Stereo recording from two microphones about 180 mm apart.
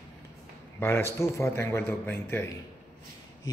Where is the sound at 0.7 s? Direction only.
15° left (ahead or behind).